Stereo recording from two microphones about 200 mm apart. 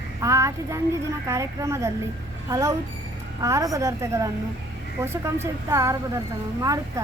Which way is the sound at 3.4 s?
15° right (ahead or behind).